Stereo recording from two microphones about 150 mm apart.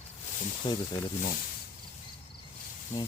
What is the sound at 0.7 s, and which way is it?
Speech, 35° left (ahead or behind).